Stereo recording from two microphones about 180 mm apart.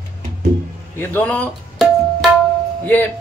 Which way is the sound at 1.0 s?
10° left (ahead or behind).